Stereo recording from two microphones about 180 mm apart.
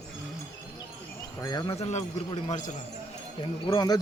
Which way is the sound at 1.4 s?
20° left (ahead or behind).